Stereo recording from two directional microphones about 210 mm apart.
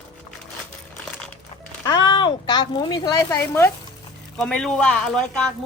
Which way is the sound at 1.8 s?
20° left (ahead or behind).